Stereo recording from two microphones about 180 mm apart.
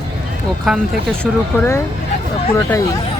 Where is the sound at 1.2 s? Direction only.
15° left (ahead or behind).